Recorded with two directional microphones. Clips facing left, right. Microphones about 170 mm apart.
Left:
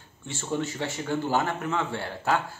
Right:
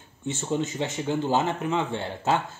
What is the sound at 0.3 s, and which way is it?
A man's voice, 20° right (ahead or behind).